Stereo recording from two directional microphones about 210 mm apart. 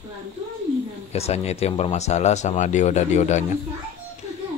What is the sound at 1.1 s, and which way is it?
Speech, 30° left (ahead or behind).